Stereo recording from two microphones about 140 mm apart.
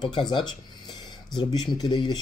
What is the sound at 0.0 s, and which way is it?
Speech, 30° left (ahead or behind).